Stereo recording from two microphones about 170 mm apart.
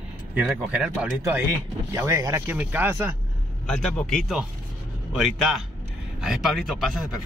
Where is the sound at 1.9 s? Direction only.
15° right (ahead or behind).